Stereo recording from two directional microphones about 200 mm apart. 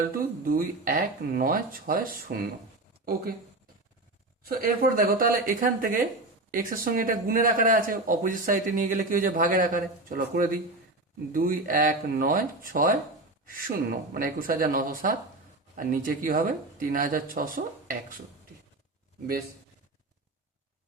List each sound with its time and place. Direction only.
0.4 s speech: 45° right (ahead or behind)
4.4 s speech: 45° right (ahead or behind)